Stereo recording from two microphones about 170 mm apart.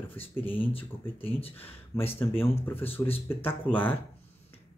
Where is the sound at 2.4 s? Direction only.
15° left (ahead or behind).